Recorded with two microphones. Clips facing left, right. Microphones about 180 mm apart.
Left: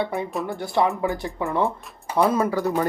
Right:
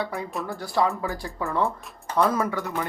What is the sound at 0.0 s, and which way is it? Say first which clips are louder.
Speech: left 4 dB; 25° left (ahead or behind).